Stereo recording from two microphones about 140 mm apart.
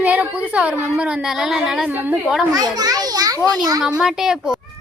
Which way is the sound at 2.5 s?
25° right (ahead or behind).